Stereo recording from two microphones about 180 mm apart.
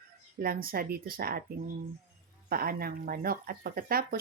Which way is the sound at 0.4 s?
55° right (ahead or behind).